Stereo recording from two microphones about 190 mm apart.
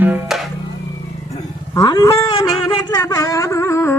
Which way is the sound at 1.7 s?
20° left (ahead or behind).